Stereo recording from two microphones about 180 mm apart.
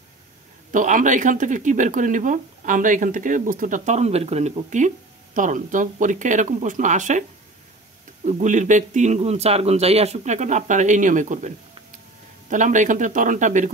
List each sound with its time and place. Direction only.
0.7 s speech: 45° right (ahead or behind)
8.3 s speech: 40° right (ahead or behind)